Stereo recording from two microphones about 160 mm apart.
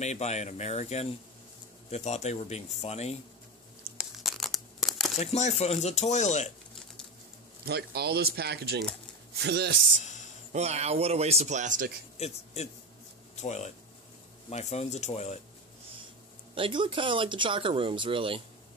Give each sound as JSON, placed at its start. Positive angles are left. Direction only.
{"t": 0.0, "sound": "speech", "side_deg": 45}
{"t": 4.0, "sound": "crumpling", "side_deg": 0}
{"t": 5.2, "sound": "speech", "side_deg": 45}
{"t": 7.6, "sound": "speech", "side_deg": -85}
{"t": 10.0, "sound": "a sound", "side_deg": 50}
{"t": 10.5, "sound": "speech", "side_deg": -45}
{"t": 12.2, "sound": "speech", "side_deg": 40}
{"t": 16.5, "sound": "speech", "side_deg": -30}